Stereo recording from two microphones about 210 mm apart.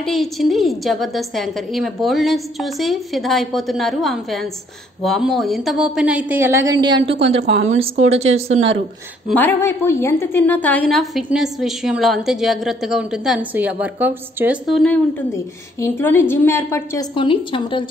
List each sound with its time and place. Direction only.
0.0 s a woman's voice: centre (ahead or behind); by 8.7 s 30° right (ahead or behind)
9.3 s a woman's voice: 10° left (ahead or behind)
17.1 s a woman's voice: 25° left (ahead or behind)